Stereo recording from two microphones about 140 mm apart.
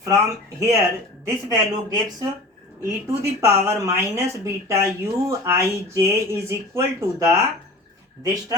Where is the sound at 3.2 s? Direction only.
20° right (ahead or behind).